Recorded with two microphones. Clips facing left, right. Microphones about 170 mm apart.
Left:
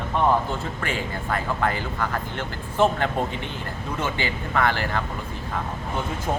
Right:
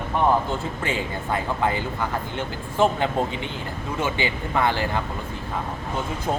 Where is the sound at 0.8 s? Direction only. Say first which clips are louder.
Right 1 dB; 20° right (ahead or behind).